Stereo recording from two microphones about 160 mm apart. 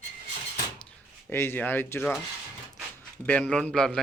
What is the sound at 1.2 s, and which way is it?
Speech, 15° left (ahead or behind).